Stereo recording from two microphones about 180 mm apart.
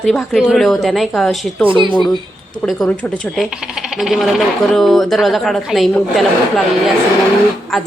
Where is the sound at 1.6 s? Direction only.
30° right (ahead or behind).